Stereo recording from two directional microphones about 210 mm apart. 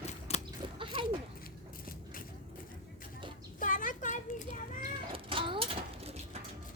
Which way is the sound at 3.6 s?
40° left (ahead or behind).